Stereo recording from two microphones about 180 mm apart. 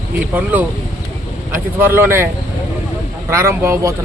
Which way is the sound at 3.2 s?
15° right (ahead or behind).